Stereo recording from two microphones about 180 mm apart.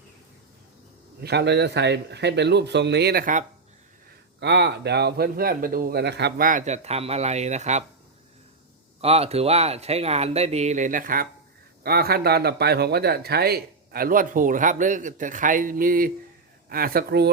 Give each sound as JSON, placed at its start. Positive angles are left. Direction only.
{"t": 1.2, "sound": "speech", "side_deg": -70}
{"t": 4.4, "sound": "speech", "side_deg": -70}
{"t": 9.0, "sound": "speech", "side_deg": -35}